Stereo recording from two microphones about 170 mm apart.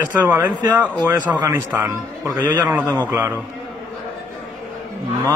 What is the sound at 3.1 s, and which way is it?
Speech, 10° right (ahead or behind).